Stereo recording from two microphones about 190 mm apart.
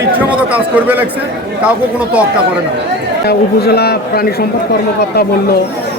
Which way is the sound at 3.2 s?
55° left (ahead or behind).